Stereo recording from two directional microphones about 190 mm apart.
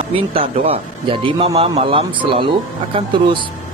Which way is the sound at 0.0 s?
30° right (ahead or behind).